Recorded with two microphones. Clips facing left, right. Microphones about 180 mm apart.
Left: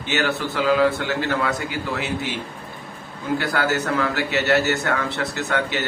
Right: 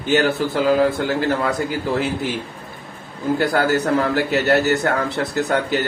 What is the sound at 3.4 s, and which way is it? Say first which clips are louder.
A man's voice: right 5 dB; 45° right (ahead or behind).